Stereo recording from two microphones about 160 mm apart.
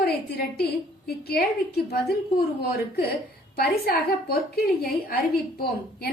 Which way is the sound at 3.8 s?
75° left (ahead or behind).